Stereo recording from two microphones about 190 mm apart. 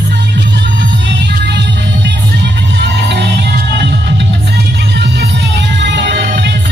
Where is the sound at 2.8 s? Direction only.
65° right (ahead or behind).